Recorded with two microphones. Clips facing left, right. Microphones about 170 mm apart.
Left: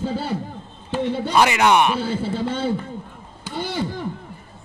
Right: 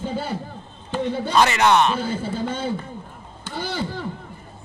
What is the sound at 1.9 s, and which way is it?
Speech, 30° left (ahead or behind).